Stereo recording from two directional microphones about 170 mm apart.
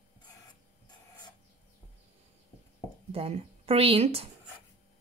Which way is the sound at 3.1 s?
35° right (ahead or behind).